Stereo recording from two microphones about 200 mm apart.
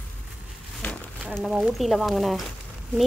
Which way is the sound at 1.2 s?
Centre (ahead or behind).